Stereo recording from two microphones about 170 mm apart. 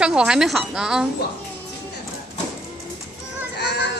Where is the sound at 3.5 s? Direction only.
75° left (ahead or behind).